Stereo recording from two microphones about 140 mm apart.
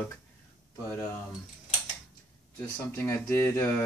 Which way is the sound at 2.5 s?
15° left (ahead or behind).